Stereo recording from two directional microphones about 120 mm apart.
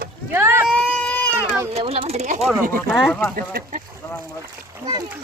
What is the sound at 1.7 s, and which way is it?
Speech, 60° right (ahead or behind).